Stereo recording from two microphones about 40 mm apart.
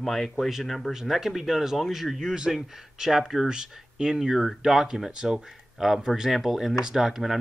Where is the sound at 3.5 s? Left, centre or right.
Centre.